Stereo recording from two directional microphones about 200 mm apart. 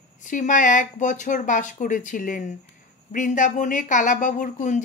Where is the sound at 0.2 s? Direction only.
40° left (ahead or behind).